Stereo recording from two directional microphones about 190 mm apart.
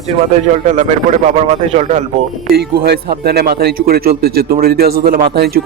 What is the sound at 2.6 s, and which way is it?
Speech, 55° right (ahead or behind).